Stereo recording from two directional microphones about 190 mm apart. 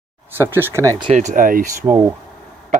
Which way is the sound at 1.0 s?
35° right (ahead or behind).